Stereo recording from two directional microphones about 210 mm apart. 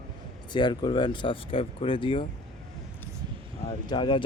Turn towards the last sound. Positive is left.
turn(degrees=20)  # may be behind; listen again after turning